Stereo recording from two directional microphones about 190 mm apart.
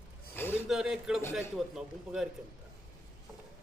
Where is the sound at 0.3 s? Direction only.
10° left (ahead or behind).